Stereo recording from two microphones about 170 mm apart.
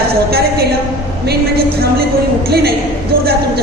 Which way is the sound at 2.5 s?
70° right (ahead or behind).